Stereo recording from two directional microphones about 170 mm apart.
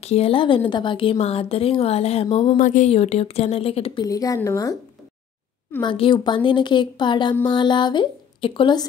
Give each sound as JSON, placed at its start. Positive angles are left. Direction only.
{"t": 0.0, "sound": "a woman's voice", "side_deg": 35}
{"t": 4.0, "sound": "a woman's voice", "side_deg": 20}
{"t": 5.8, "sound": "a woman's voice", "side_deg": 30}